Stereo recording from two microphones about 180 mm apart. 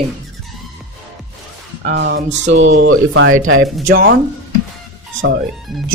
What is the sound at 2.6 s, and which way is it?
Speech, 90° right.